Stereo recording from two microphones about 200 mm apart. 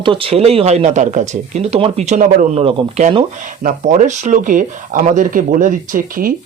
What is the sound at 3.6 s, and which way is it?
Speech, 40° right (ahead or behind).